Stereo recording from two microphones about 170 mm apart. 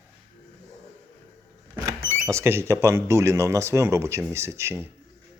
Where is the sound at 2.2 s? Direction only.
15° right (ahead or behind).